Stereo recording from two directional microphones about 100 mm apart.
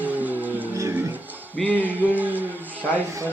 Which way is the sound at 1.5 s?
15° left (ahead or behind).